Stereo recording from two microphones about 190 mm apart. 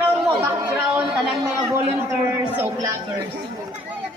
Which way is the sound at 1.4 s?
15° right (ahead or behind).